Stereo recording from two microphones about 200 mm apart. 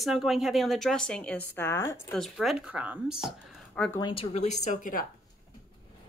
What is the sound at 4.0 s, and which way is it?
Speech, 25° left (ahead or behind).